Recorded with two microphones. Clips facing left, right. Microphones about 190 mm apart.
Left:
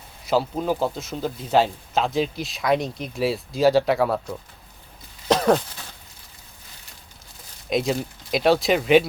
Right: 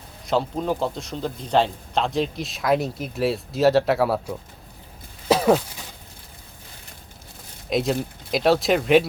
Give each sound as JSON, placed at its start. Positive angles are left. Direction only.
{"t": 0.3, "sound": "speech", "side_deg": 5}
{"t": 5.3, "sound": "a sound", "side_deg": -5}
{"t": 7.7, "sound": "speech", "side_deg": 0}